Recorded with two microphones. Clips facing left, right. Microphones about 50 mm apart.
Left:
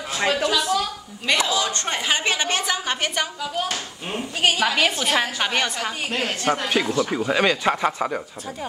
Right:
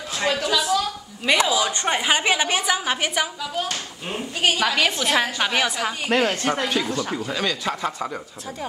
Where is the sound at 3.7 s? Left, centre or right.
Centre.